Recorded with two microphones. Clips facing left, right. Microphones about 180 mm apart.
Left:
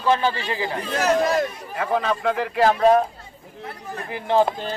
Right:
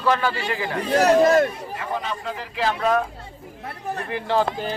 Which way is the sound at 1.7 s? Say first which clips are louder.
Left 5 dB; 65° left (ahead or behind).